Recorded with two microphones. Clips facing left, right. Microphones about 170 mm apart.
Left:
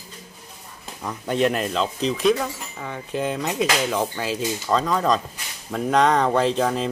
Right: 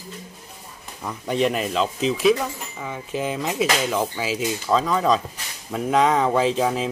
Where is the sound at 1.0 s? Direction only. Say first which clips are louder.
Even; centre (ahead or behind).